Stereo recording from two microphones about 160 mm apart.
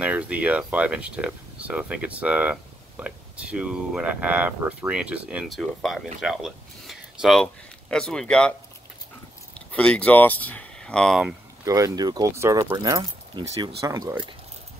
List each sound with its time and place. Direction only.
0.0 s speech: 10° right (ahead or behind)
11.6 s speech: 20° right (ahead or behind)